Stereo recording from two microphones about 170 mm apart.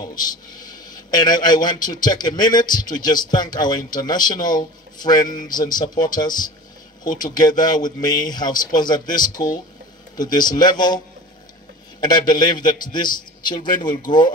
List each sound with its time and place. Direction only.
0.0 s a man's voice: 25° left (ahead or behind)
12.0 s a man's voice: 25° left (ahead or behind)